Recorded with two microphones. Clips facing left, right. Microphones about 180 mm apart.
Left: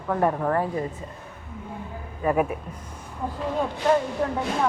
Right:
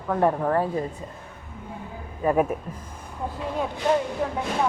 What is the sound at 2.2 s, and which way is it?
Speech, centre (ahead or behind).